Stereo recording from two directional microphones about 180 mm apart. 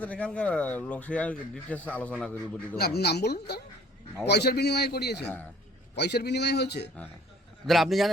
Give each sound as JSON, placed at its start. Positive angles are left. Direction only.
{"t": 0.0, "sound": "a man's voice", "side_deg": 5}
{"t": 2.7, "sound": "a man's voice", "side_deg": 60}
{"t": 5.2, "sound": "speech", "side_deg": 10}
{"t": 6.0, "sound": "a man's voice", "side_deg": 65}
{"t": 7.7, "sound": "a man's voice", "side_deg": 0}